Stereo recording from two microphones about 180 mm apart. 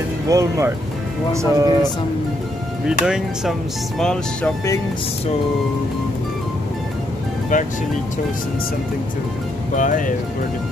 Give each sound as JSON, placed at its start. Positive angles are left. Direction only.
{"t": 0.3, "sound": "speech", "side_deg": -15}
{"t": 2.9, "sound": "speech", "side_deg": -5}
{"t": 7.5, "sound": "speech", "side_deg": 45}
{"t": 9.8, "sound": "speech", "side_deg": 45}